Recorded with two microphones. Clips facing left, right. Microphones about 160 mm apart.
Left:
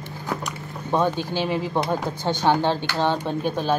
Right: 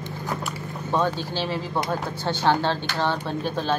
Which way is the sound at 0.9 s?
15° left (ahead or behind).